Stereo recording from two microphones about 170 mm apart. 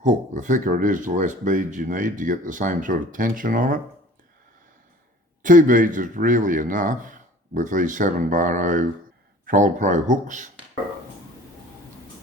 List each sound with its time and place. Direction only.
0.0 s speech: 50° right (ahead or behind)
5.4 s speech: 50° right (ahead or behind)